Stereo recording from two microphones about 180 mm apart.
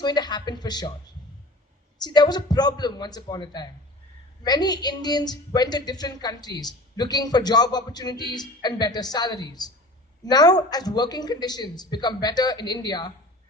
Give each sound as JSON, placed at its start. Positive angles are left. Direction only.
{"t": 0.0, "sound": "a woman's voice", "side_deg": 25}
{"t": 2.0, "sound": "a woman's voice", "side_deg": 25}